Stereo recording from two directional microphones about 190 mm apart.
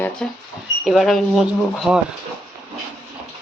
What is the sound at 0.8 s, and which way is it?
Speech, centre (ahead or behind).